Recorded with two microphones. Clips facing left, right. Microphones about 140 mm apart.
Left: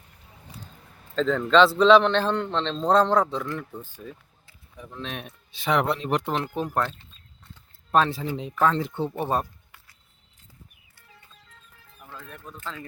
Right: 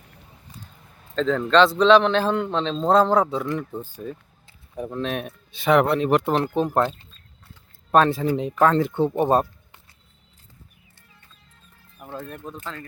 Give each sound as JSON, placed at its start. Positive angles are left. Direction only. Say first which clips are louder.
{"t": 1.1, "sound": "a man's voice", "louder": "right 1 dB", "side_deg": 0}
{"t": 3.8, "sound": "speech", "louder": "right 7 dB", "side_deg": -35}
{"t": 4.8, "sound": "speech", "louder": "right 9 dB", "side_deg": -50}
{"t": 6.3, "sound": "speech", "louder": "right 6 dB", "side_deg": -35}
{"t": 6.7, "sound": "a man's voice", "louder": "right 5 dB", "side_deg": -15}
{"t": 7.9, "sound": "speech", "louder": "right 5 dB", "side_deg": -50}
{"t": 12.1, "sound": "speech", "louder": "right 8 dB", "side_deg": -35}